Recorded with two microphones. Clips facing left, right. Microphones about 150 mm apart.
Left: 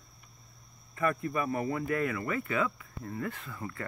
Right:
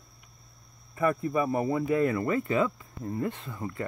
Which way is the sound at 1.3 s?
20° right (ahead or behind).